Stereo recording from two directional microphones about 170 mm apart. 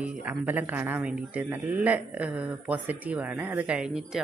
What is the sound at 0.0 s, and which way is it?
Speech, 10° right (ahead or behind).